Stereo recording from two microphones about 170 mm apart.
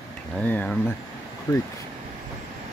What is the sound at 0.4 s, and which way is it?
Speech, 10° left (ahead or behind).